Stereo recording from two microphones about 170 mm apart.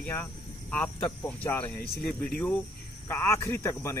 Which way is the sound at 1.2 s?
10° left (ahead or behind).